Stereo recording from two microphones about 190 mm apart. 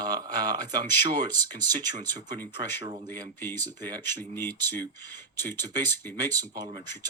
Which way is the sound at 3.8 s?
20° right (ahead or behind).